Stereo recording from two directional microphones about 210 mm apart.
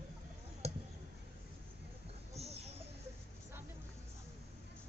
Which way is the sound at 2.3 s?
30° right (ahead or behind).